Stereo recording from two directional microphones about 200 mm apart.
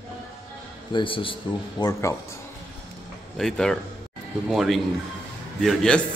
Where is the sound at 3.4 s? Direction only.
5° left (ahead or behind).